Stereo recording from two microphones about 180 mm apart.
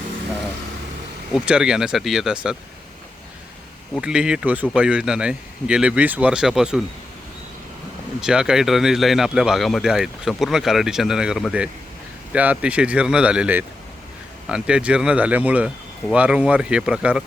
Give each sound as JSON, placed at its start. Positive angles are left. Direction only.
{"t": 1.5, "sound": "a man's voice", "side_deg": -5}
{"t": 4.0, "sound": "a man's voice", "side_deg": -5}
{"t": 8.2, "sound": "a man's voice", "side_deg": -5}